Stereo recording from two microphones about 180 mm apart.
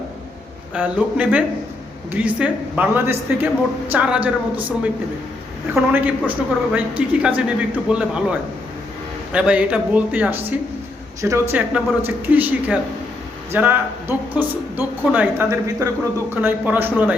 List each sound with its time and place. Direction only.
0.7 s speech: 10° right (ahead or behind)